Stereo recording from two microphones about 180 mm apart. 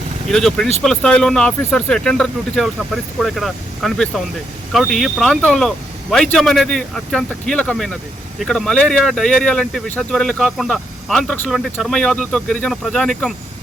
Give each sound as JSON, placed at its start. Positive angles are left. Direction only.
{"t": 0.3, "sound": "speech", "side_deg": 0}